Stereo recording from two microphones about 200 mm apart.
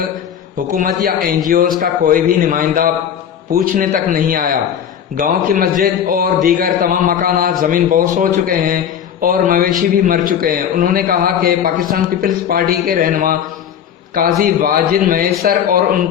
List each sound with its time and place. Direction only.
0.8 s a man's voice: 45° right (ahead or behind)